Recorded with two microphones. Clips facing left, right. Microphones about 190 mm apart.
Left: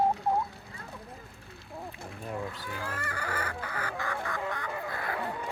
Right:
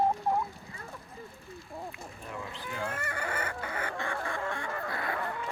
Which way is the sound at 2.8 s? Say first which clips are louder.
Right 2 dB; 25° right (ahead or behind).